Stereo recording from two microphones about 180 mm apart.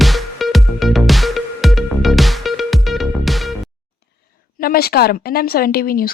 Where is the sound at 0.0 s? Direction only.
Centre (ahead or behind).